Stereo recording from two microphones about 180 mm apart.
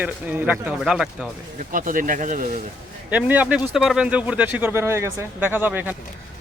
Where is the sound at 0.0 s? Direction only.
10° right (ahead or behind).